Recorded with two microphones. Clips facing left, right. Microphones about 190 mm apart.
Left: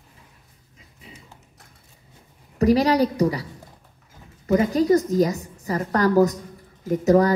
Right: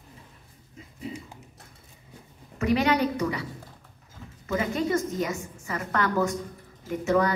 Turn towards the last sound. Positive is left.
turn(degrees=40)  # may be behind; listen again after turning